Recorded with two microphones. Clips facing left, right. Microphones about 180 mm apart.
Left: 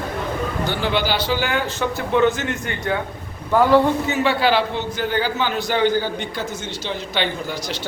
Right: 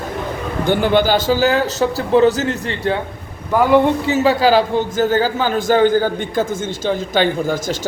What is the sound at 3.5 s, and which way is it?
Speech, 15° right (ahead or behind).